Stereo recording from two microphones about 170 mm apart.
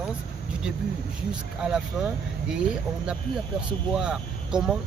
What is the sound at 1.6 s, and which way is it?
Speech, 5° right (ahead or behind).